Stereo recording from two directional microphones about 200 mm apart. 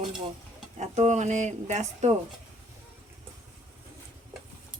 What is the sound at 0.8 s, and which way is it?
Speech, 35° right (ahead or behind).